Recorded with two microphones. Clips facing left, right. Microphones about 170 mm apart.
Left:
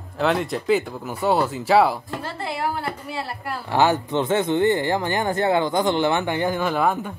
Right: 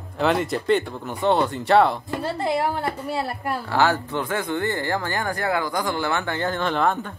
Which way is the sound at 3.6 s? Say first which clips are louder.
Left 3 dB; 20° left (ahead or behind).